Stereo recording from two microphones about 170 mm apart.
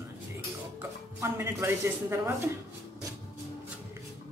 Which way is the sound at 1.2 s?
15° right (ahead or behind).